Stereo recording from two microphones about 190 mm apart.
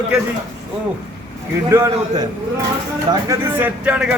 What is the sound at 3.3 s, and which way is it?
Speech, 10° right (ahead or behind).